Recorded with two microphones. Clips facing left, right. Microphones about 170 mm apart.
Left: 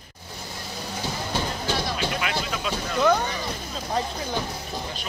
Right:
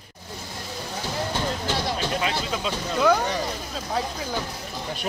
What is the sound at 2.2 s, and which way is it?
Vehicle, 30° right (ahead or behind).